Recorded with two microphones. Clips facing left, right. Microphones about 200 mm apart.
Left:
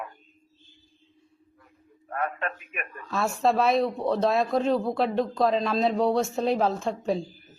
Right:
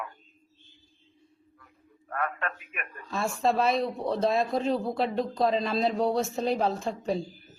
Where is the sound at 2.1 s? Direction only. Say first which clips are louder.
Left 2 dB; 25° left (ahead or behind).